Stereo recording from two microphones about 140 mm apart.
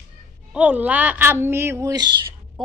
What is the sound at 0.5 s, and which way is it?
A woman's voice, 10° right (ahead or behind).